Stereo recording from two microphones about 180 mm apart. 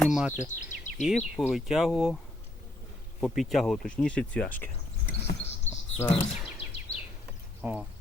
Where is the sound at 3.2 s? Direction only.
Centre (ahead or behind).